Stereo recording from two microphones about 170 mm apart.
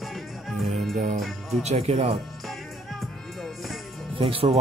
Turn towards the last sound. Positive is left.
turn(degrees=-30)  # may be behind; listen again after turning